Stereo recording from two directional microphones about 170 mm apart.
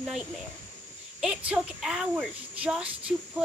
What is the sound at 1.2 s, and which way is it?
Speech, 5° right (ahead or behind).